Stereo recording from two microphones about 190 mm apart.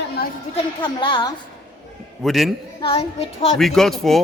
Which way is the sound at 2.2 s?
Centre (ahead or behind).